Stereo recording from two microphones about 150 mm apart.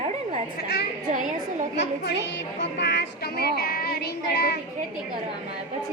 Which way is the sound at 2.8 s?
90° left.